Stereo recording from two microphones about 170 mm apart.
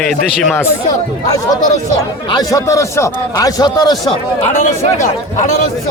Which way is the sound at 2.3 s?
20° left (ahead or behind).